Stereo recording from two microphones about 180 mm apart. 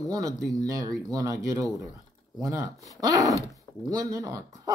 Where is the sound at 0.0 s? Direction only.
20° right (ahead or behind).